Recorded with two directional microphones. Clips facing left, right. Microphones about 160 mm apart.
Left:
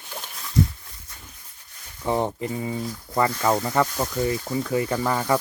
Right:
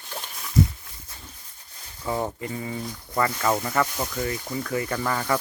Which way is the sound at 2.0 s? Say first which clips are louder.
Left 4 dB; 25° left (ahead or behind).